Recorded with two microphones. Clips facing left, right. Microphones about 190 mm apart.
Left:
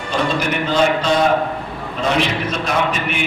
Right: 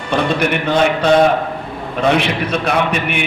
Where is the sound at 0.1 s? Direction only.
60° right (ahead or behind).